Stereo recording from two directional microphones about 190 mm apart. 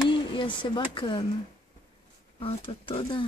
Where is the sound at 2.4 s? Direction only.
30° left (ahead or behind).